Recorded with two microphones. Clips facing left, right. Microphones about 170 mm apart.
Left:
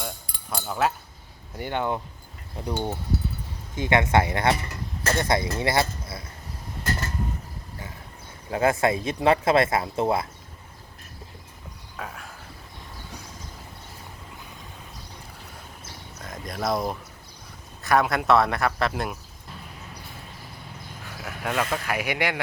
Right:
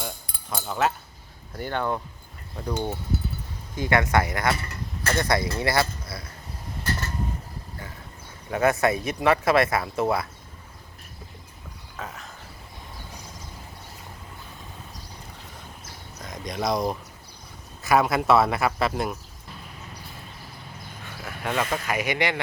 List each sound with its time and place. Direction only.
0.5 s speech: centre (ahead or behind)
1.5 s speech: 15° left (ahead or behind)
8.4 s speech: 30° left (ahead or behind)
11.9 s a sound: 5° right (ahead or behind)
16.2 s speech: centre (ahead or behind)
21.2 s speech: 5° left (ahead or behind)